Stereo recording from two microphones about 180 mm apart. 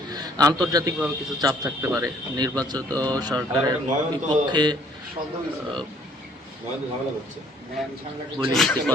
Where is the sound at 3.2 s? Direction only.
20° right (ahead or behind).